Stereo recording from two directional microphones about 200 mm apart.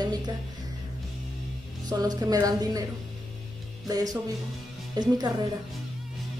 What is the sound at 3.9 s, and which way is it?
Speech, 20° right (ahead or behind).